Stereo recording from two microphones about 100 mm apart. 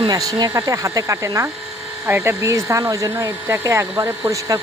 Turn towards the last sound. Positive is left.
turn(degrees=-35)  # may be behind; listen again after turning